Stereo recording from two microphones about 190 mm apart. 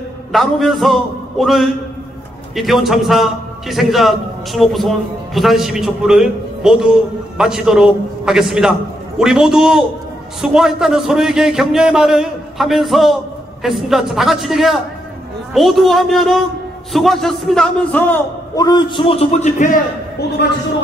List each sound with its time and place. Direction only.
0.3 s a man's voice: centre (ahead or behind)
18.7 s a man's voice: 25° left (ahead or behind); by 19.8 s 40° left (ahead or behind)